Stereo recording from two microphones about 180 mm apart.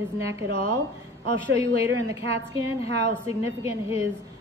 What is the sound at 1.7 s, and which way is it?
Speech, 35° left (ahead or behind).